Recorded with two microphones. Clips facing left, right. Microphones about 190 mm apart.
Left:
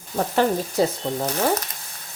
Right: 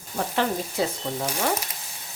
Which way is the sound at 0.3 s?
40° left (ahead or behind).